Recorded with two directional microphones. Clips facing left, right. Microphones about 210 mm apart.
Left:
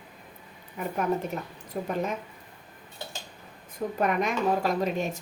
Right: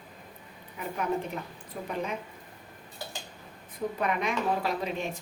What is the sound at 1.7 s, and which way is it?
Speech, 45° left (ahead or behind).